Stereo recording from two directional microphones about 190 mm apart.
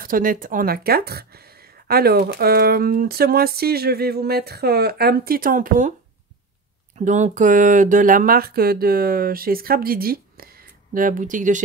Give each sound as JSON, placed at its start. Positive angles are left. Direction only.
{"t": 0.0, "sound": "a woman's voice", "side_deg": -45}
{"t": 7.0, "sound": "speech", "side_deg": -35}